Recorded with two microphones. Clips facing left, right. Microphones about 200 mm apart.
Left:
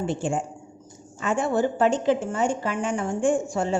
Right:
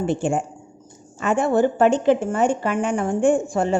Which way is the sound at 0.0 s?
60° right (ahead or behind).